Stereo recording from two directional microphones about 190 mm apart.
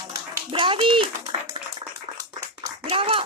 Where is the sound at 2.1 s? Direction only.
30° right (ahead or behind).